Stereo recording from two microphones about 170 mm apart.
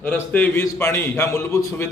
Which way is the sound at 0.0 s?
10° left (ahead or behind).